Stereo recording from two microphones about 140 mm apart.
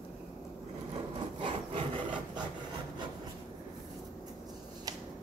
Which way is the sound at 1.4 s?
40° right (ahead or behind).